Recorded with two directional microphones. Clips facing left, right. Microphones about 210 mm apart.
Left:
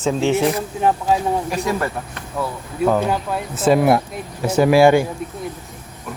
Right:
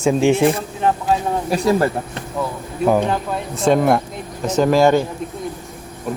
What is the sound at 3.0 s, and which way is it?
Speech, 5° left (ahead or behind).